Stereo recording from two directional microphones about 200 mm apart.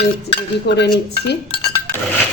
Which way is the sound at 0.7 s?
60° left (ahead or behind).